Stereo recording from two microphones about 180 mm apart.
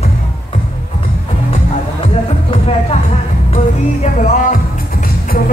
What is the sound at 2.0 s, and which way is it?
Music, 30° left (ahead or behind).